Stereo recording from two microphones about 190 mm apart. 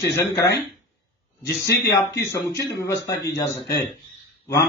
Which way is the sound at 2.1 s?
15° left (ahead or behind).